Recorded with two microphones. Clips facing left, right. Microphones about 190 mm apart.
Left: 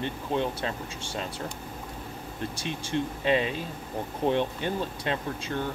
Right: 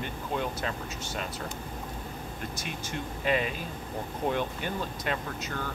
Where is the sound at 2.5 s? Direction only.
30° left (ahead or behind).